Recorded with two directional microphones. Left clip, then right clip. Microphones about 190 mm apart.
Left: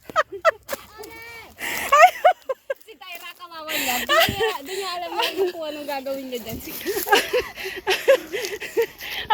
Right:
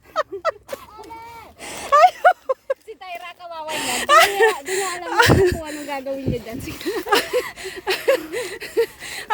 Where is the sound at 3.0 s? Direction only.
10° right (ahead or behind).